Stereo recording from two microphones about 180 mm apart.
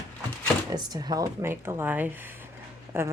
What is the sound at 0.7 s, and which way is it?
Speech, 20° right (ahead or behind).